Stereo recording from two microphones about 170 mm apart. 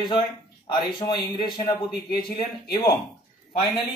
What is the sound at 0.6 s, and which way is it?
Speech, 25° left (ahead or behind).